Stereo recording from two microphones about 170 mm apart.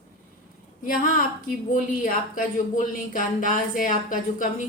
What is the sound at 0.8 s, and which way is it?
Speech, 50° left (ahead or behind).